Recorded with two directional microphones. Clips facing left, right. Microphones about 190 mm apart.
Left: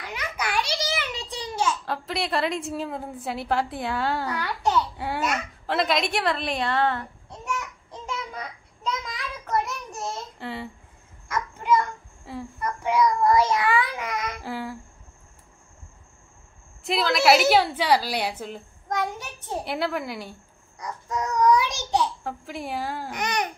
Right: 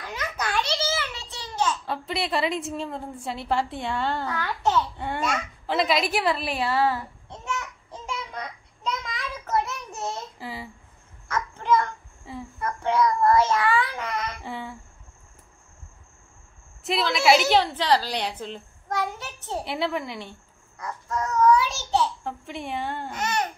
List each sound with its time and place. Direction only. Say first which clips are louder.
0.0 s a sound: even; 15° left (ahead or behind)
1.9 s a woman's voice: even; centre (ahead or behind)
7.9 s babbling: even; centre (ahead or behind)
9.0 s child singing: right 1 dB; centre (ahead or behind)
11.2 s child singing: even; 10° left (ahead or behind)
12.3 s a sound: left 1 dB; centre (ahead or behind)
13.3 s child singing: even; 15° left (ahead or behind)
16.8 s a woman's voice: left 1 dB; centre (ahead or behind)
19.6 s a woman's voice: even; centre (ahead or behind)
21.4 s a child's voice: right 1 dB; 15° left (ahead or behind)
22.2 s a woman's voice: left 1 dB; centre (ahead or behind)
23.2 s a woman's voice: even; 15° left (ahead or behind)